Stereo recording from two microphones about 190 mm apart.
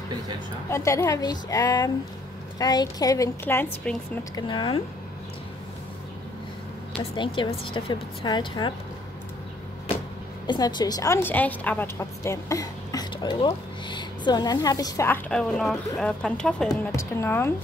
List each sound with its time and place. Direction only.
0.7 s a woman's voice: 15° left (ahead or behind)
4.4 s a woman's voice: 25° left (ahead or behind)
7.2 s a woman's voice: 25° left (ahead or behind)
10.4 s a woman's voice: 20° left (ahead or behind)